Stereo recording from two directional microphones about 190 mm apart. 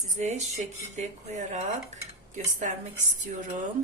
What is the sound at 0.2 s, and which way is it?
Speech, 35° right (ahead or behind).